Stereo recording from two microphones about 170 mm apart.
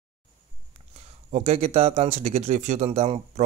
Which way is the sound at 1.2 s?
40° right (ahead or behind).